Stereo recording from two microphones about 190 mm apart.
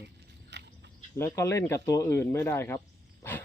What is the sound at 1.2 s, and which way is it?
Speech, 15° left (ahead or behind).